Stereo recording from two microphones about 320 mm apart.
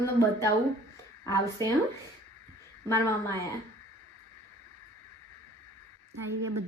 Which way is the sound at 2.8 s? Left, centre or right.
Centre.